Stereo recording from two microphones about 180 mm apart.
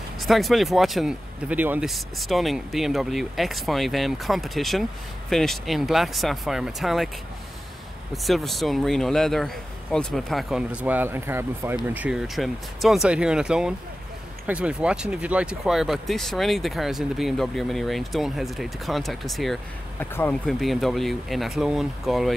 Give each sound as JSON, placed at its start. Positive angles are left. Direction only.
{"t": 0.2, "sound": "speech", "side_deg": 0}
{"t": 8.1, "sound": "speech", "side_deg": 0}